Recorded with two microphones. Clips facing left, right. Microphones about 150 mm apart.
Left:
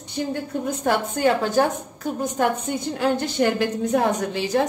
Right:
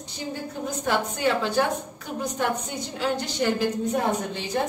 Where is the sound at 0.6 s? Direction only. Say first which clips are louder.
Left 2 dB; 50° left (ahead or behind).